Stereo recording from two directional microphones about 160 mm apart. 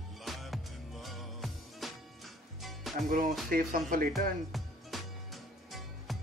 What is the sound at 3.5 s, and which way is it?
Speech, 60° right (ahead or behind).